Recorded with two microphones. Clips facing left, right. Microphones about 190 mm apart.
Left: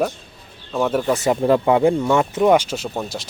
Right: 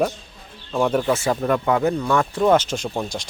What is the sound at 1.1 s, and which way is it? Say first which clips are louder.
Speech: left 3 dB; 20° left (ahead or behind).